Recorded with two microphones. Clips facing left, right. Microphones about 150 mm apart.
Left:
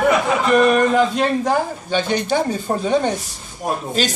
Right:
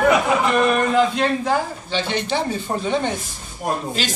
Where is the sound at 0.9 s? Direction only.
45° left (ahead or behind).